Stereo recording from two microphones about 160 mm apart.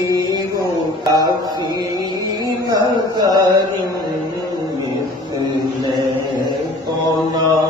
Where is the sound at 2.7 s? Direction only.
25° right (ahead or behind).